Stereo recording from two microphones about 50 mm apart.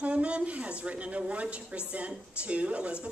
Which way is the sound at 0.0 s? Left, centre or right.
Right.